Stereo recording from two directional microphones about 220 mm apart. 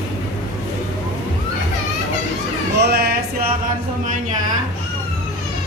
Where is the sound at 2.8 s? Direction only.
45° right (ahead or behind).